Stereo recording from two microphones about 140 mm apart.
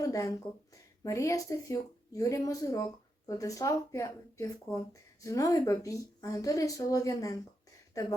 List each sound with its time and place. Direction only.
0.0 s speech: 25° left (ahead or behind)